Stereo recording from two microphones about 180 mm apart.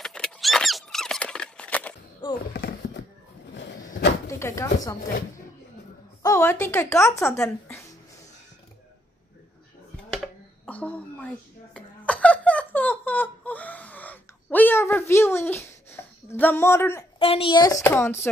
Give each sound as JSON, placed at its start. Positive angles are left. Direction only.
{"t": 0.0, "sound": "squeak", "side_deg": 5}
{"t": 2.5, "sound": "a sound", "side_deg": 80}
{"t": 4.3, "sound": "speech", "side_deg": 15}
{"t": 6.2, "sound": "speech", "side_deg": 15}
{"t": 7.2, "sound": "a woman's voice", "side_deg": 5}
{"t": 10.1, "sound": "a sound", "side_deg": 5}
{"t": 17.2, "sound": "a woman's voice", "side_deg": 30}
{"t": 17.8, "sound": "speech", "side_deg": 10}